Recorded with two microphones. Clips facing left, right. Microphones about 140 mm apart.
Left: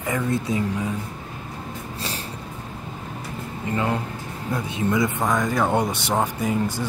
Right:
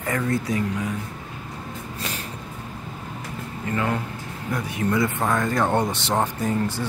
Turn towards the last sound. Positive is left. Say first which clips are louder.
# left 1 dB
turn(degrees=10)  # may be behind; listen again after turning